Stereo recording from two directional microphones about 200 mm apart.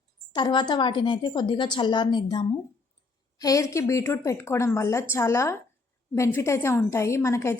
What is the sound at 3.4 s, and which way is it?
A woman's voice, 15° left (ahead or behind).